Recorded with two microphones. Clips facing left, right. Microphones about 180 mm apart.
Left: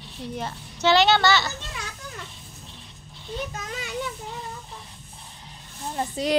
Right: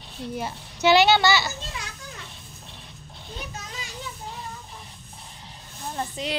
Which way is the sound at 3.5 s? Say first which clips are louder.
Left 4 dB; 55° left (ahead or behind).